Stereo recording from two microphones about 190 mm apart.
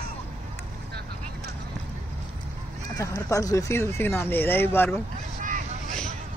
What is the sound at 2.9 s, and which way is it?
Speech, 15° left (ahead or behind).